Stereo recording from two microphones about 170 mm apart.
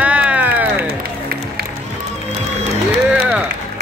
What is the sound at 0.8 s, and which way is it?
Music, 70° right (ahead or behind).